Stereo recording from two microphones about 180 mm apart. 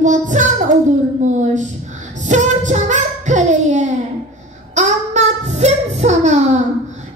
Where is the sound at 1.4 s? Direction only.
40° right (ahead or behind).